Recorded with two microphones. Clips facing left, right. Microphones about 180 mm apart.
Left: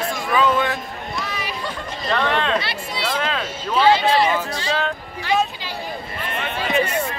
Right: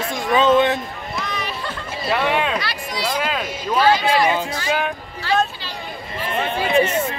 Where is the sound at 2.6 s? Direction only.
25° left (ahead or behind).